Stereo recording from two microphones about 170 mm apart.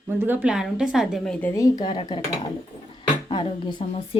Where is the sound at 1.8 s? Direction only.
25° left (ahead or behind).